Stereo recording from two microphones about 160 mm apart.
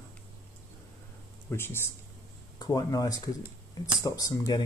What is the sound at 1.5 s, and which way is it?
Speech, 15° left (ahead or behind).